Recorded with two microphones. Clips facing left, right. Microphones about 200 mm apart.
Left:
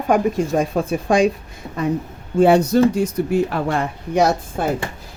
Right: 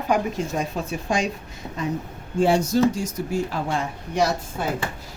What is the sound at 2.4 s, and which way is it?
Speech, 60° left (ahead or behind).